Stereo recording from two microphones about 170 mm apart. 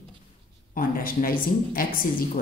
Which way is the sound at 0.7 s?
55° left (ahead or behind).